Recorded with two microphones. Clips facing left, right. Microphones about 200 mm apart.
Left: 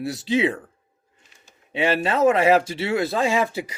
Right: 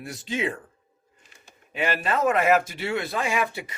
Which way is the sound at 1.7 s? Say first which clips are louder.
Left 5 dB; 30° left (ahead or behind).